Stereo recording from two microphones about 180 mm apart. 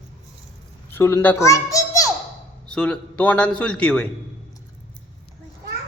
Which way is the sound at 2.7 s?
5° left (ahead or behind).